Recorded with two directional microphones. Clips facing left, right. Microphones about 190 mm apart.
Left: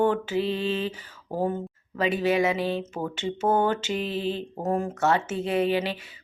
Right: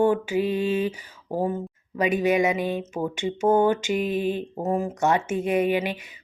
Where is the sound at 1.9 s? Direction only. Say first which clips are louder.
Right 2 dB; 15° right (ahead or behind).